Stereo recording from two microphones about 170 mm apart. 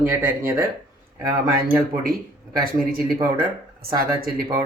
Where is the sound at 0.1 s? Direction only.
15° right (ahead or behind).